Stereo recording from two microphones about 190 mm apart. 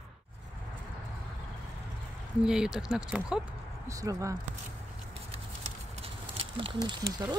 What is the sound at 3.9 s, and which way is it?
Speech, 15° right (ahead or behind).